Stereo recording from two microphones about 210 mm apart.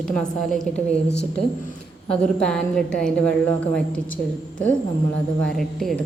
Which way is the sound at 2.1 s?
5° left (ahead or behind).